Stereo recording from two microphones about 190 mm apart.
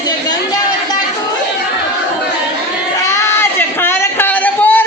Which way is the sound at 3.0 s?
15° left (ahead or behind).